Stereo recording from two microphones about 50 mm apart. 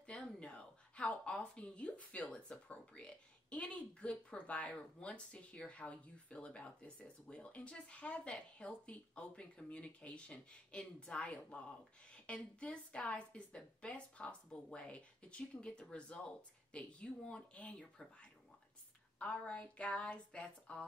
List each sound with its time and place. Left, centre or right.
0.0 s a woman's voice: left
19.1 s a woman's voice: left